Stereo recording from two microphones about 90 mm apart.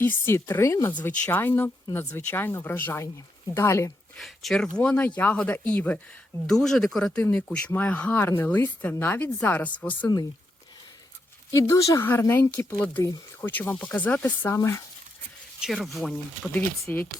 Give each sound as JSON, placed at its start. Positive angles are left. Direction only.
{"t": 0.0, "sound": "speech", "side_deg": 25}
{"t": 0.9, "sound": "speech", "side_deg": 20}
{"t": 4.2, "sound": "speech", "side_deg": 5}
{"t": 6.5, "sound": "speech", "side_deg": 5}
{"t": 7.2, "sound": "speech", "side_deg": 20}
{"t": 11.5, "sound": "speech", "side_deg": 35}
{"t": 12.3, "sound": "speech", "side_deg": 25}
{"t": 12.7, "sound": "speech", "side_deg": 15}
{"t": 14.5, "sound": "speech", "side_deg": 30}
{"t": 15.6, "sound": "speech", "side_deg": 0}
{"t": 16.9, "sound": "speech", "side_deg": 15}